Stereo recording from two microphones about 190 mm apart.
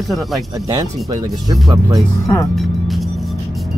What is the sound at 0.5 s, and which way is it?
Speech, 20° right (ahead or behind).